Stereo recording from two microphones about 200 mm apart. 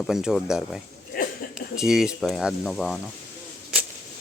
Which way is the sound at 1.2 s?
45° left (ahead or behind).